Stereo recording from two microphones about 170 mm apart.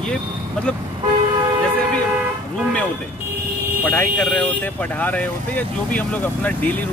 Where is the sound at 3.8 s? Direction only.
10° left (ahead or behind).